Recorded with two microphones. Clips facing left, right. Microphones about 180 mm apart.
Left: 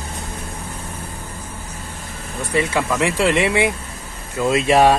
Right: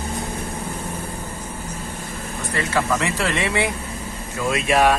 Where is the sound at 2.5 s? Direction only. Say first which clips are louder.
Left 2 dB; 15° left (ahead or behind).